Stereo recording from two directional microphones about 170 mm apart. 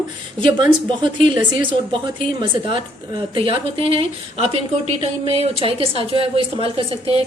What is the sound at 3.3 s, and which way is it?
A woman's voice, 30° right (ahead or behind).